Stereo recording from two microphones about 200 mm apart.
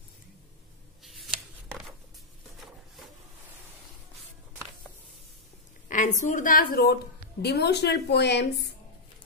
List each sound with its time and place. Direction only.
1.0 s scissors: centre (ahead or behind)
5.9 s a woman's voice: 40° left (ahead or behind); by 8.6 s 60° left (ahead or behind)